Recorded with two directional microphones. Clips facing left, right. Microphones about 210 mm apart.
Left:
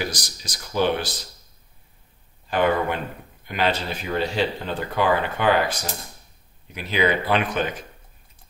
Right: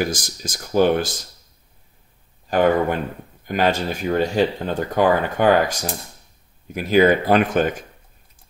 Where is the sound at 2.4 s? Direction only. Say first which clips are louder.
Right 4 dB; 45° right (ahead or behind).